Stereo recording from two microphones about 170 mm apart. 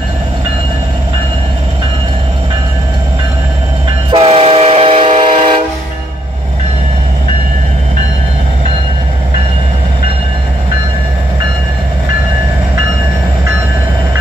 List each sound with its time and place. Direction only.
4.1 s train: 35° right (ahead or behind)